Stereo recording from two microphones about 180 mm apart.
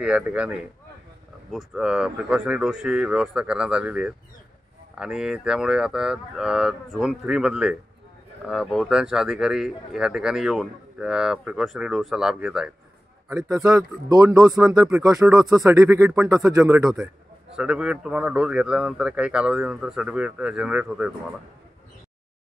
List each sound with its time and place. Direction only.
0.0 s speech: 5° right (ahead or behind)
13.3 s a man's voice: 20° right (ahead or behind)
17.6 s speech: 5° right (ahead or behind)